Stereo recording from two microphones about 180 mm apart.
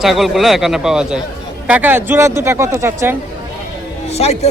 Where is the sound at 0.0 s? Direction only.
Centre (ahead or behind).